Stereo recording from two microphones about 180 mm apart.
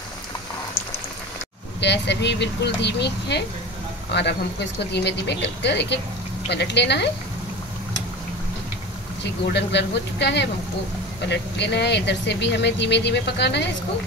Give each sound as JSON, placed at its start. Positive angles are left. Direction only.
{"t": 1.8, "sound": "speech", "side_deg": 70}
{"t": 9.2, "sound": "speech", "side_deg": 70}